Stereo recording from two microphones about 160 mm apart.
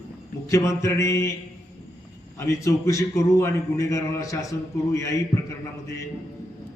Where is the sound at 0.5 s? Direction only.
20° left (ahead or behind).